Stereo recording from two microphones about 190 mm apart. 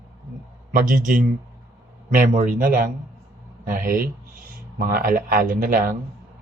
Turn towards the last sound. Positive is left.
turn(degrees=-50)  # may be behind; listen again after turning